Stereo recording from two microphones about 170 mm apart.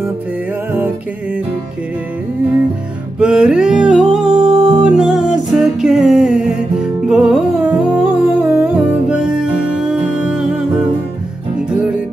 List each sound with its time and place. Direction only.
3.2 s music: 5° right (ahead or behind)
4.3 s music: 25° right (ahead or behind)
4.8 s music: centre (ahead or behind)